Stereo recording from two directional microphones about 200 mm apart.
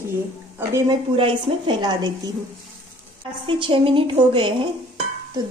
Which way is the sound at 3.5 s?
25° right (ahead or behind).